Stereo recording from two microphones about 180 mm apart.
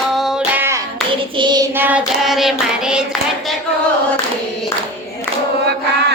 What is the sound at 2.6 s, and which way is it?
Hands, 5° right (ahead or behind).